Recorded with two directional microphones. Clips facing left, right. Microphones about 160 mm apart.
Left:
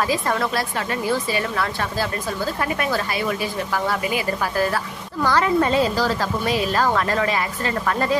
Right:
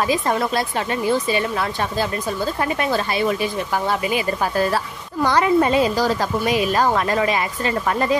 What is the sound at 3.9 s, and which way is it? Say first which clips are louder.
A woman's voice: right 2 dB; 20° right (ahead or behind).